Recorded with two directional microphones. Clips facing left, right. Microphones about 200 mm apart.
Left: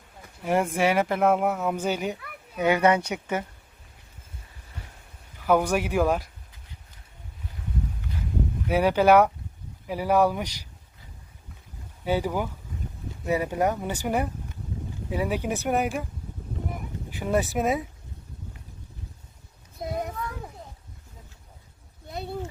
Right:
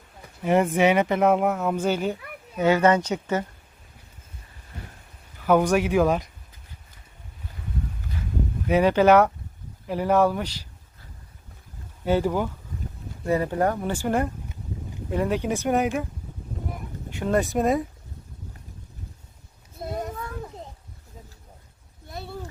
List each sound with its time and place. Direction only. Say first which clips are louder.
0.4 s speech: right 4 dB; centre (ahead or behind)
5.7 s speech: right 3 dB; 10° left (ahead or behind)
8.6 s speech: right 2 dB; 10° left (ahead or behind)
12.0 s speech: right 3 dB; 10° left (ahead or behind)
17.2 s speech: right 2 dB; 5° left (ahead or behind)
22.1 s a sound: left 3 dB; 20° left (ahead or behind)